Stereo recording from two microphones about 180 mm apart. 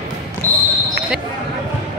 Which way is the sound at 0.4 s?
10° left (ahead or behind).